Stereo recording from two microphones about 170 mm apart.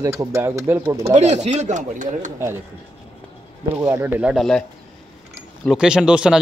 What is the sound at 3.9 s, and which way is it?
Speech, 15° right (ahead or behind).